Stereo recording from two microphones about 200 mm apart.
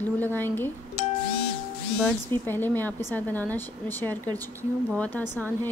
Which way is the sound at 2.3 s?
10° left (ahead or behind).